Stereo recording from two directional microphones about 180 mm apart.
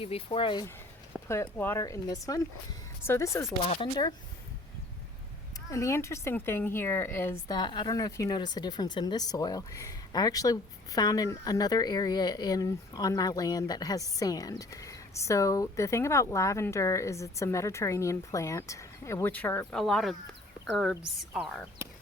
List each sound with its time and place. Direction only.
0.0 s speech: 30° left (ahead or behind)
1.3 s a woman's voice: 15° left (ahead or behind)
3.6 s speech: 30° left (ahead or behind)
5.7 s a woman's voice: 15° left (ahead or behind)
21.3 s speech: centre (ahead or behind)